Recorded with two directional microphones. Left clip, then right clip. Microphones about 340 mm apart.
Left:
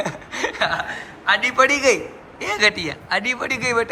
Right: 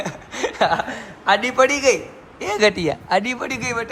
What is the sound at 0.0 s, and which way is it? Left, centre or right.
Chuckle, centre.